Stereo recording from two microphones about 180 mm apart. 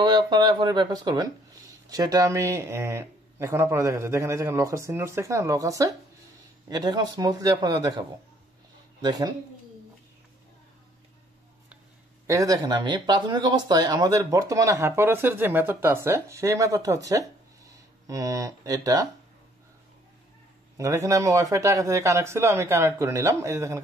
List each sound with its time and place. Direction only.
0.0 s a man's voice: 25° right (ahead or behind)
9.0 s a man's voice: 20° right (ahead or behind)
12.3 s speech: 20° right (ahead or behind)
20.7 s speech: 15° right (ahead or behind)